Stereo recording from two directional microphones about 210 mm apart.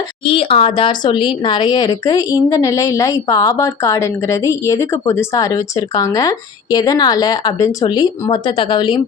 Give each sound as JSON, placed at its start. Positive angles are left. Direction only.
{"t": 0.3, "sound": "a woman's voice", "side_deg": 25}